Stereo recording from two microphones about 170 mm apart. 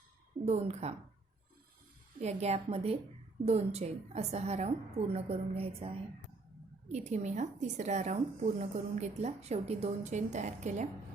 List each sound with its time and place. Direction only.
0.4 s a woman's voice: 40° right (ahead or behind)
2.2 s a woman's voice: 40° right (ahead or behind)